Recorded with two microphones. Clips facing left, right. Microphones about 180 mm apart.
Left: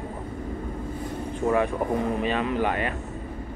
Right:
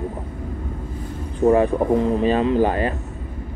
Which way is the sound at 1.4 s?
35° right (ahead or behind).